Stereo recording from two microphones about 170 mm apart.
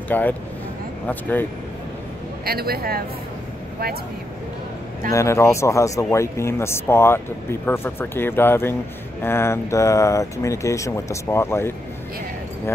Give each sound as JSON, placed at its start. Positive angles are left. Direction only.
{"t": 0.1, "sound": "speech", "side_deg": 10}
{"t": 2.4, "sound": "a man's voice", "side_deg": -65}
{"t": 5.1, "sound": "speech", "side_deg": 15}